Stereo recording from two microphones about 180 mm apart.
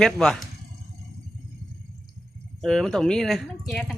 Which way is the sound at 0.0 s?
5° left (ahead or behind).